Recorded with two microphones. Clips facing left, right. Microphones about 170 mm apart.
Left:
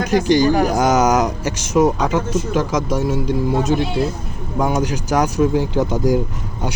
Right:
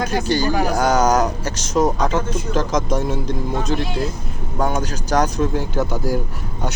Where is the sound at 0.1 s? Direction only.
15° left (ahead or behind).